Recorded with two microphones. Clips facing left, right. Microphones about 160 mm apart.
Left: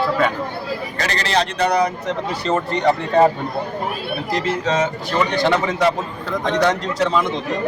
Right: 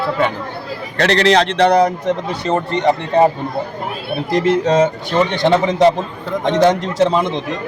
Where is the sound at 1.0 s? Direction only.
75° right (ahead or behind).